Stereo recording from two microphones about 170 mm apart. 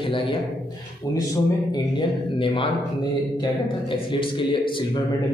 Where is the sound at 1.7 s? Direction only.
30° left (ahead or behind).